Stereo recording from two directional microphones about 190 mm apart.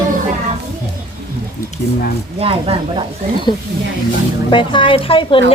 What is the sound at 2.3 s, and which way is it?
Speech, 30° right (ahead or behind).